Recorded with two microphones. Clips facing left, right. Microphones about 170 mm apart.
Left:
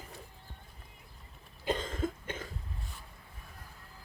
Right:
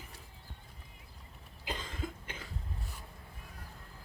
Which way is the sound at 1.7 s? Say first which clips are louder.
Left 8 dB; 45° left (ahead or behind).